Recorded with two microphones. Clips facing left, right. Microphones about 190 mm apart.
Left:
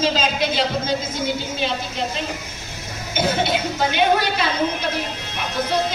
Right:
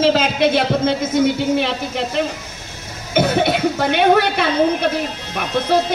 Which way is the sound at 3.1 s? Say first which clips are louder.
Right 5 dB; 65° right (ahead or behind).